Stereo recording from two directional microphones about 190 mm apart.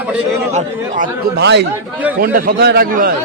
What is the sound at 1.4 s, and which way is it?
Speech, 65° right (ahead or behind).